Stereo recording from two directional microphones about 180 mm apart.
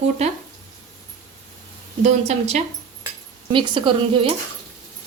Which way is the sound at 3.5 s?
30° right (ahead or behind).